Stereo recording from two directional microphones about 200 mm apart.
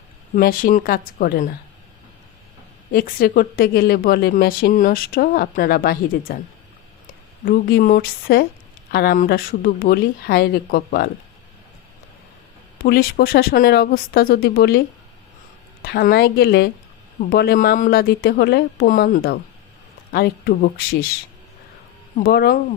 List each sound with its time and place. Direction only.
0.3 s speech: 45° left (ahead or behind)
2.9 s speech: 50° left (ahead or behind)
7.4 s speech: 50° left (ahead or behind)
12.8 s speech: 50° left (ahead or behind)
15.8 s speech: 50° left (ahead or behind)
22.2 s speech: 50° left (ahead or behind)